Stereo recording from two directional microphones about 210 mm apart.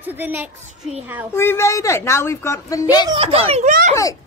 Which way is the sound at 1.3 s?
10° left (ahead or behind).